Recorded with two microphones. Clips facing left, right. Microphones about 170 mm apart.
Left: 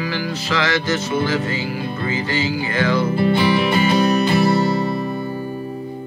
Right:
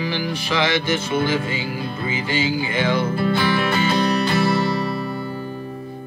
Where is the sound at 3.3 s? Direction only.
10° left (ahead or behind).